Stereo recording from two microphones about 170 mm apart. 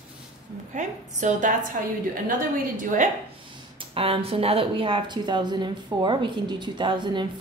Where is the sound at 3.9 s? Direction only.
35° right (ahead or behind).